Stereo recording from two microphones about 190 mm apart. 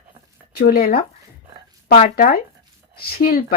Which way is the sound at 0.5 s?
50° left (ahead or behind).